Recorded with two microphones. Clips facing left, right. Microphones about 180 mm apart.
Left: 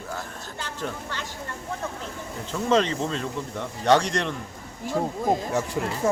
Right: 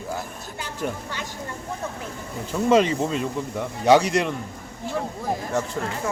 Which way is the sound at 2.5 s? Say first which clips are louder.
Right 4 dB; 10° right (ahead or behind).